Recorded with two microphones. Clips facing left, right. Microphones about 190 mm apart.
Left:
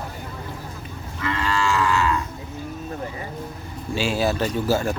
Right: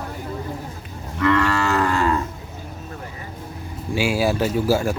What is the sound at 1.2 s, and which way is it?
Moo, 65° right (ahead or behind).